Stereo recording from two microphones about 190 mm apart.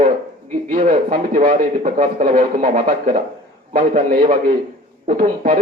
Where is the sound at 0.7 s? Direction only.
35° right (ahead or behind).